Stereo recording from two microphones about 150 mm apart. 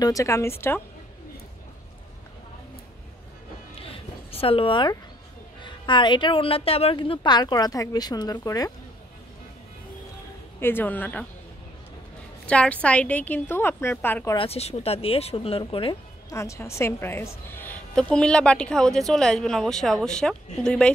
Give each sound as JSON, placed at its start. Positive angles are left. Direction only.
{"t": 0.0, "sound": "speech", "side_deg": 20}
{"t": 3.9, "sound": "a sound", "side_deg": 40}
{"t": 5.6, "sound": "a woman's voice", "side_deg": 30}
{"t": 10.6, "sound": "a woman's voice", "side_deg": 15}
{"t": 12.4, "sound": "a woman's voice", "side_deg": 10}
{"t": 14.3, "sound": "a woman's voice", "side_deg": 40}
{"t": 16.3, "sound": "a woman's voice", "side_deg": 20}